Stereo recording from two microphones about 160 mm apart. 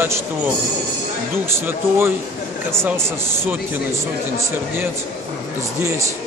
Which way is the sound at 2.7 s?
15° right (ahead or behind).